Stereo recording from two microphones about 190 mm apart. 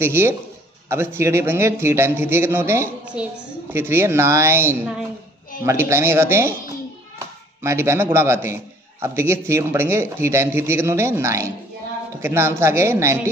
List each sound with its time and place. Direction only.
0.0 s speech: 15° right (ahead or behind)
7.6 s speech: 15° right (ahead or behind)